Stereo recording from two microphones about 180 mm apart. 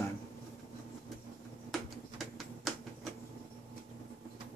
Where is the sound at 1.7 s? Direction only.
Centre (ahead or behind).